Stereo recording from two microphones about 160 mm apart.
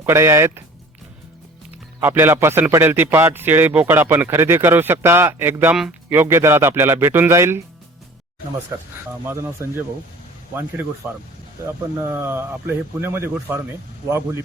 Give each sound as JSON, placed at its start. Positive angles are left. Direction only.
{"t": 0.0, "sound": "a man's voice", "side_deg": -15}
{"t": 2.0, "sound": "a man's voice", "side_deg": -15}
{"t": 8.7, "sound": "a man's voice", "side_deg": -15}
{"t": 11.6, "sound": "a man's voice", "side_deg": -15}